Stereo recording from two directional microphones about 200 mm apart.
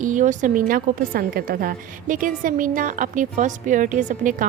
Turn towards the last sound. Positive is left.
turn(degrees=-40)  # may be behind; listen again after turning